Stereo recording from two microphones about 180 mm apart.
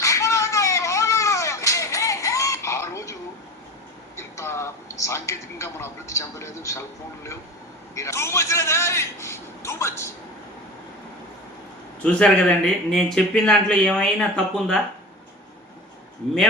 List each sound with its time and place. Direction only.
0.0 s a sound: 15° left (ahead or behind)
4.2 s speech: 15° left (ahead or behind)
7.9 s a man's voice: 15° left (ahead or behind)
12.1 s speech: 5° left (ahead or behind)